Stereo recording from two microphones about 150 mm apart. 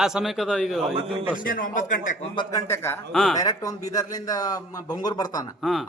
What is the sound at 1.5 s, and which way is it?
Speech, 65° left (ahead or behind).